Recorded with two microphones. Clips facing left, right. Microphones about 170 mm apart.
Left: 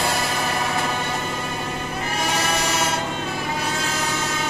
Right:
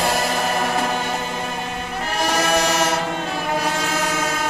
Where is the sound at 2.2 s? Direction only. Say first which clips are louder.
Right 6 dB; 40° right (ahead or behind).